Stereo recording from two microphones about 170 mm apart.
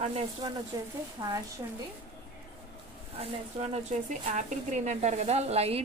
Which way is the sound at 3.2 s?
35° right (ahead or behind).